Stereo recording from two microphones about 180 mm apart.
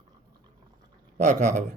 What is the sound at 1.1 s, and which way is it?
Speech, 40° right (ahead or behind).